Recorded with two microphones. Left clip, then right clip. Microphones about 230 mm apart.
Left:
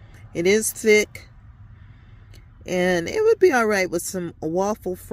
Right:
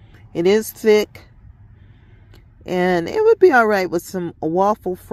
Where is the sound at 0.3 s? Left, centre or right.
Centre.